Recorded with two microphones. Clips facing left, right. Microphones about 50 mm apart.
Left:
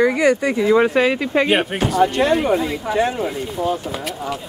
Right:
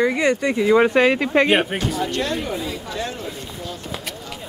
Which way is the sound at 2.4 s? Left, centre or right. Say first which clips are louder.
Left 8 dB; left.